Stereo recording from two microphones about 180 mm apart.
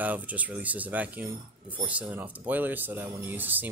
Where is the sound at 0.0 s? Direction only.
10° right (ahead or behind).